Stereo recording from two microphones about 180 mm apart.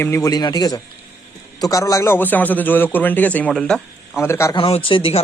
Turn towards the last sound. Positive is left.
turn(degrees=30)  # may be behind; listen again after turning